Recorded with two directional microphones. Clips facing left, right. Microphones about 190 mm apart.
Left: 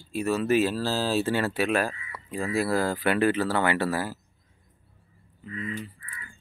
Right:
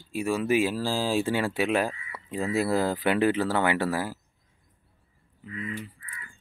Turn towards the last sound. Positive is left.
turn(degrees=-10)  # may be behind; listen again after turning